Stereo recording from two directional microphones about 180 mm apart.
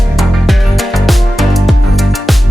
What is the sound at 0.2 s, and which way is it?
Music, centre (ahead or behind).